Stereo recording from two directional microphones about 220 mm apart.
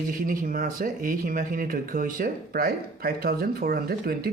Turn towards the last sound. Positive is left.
turn(degrees=-45)  # may be behind; listen again after turning